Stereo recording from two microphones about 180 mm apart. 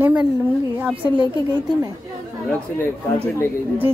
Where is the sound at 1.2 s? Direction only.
20° right (ahead or behind).